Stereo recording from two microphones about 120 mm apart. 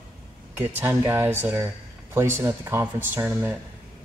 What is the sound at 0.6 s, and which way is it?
Speech, 15° right (ahead or behind).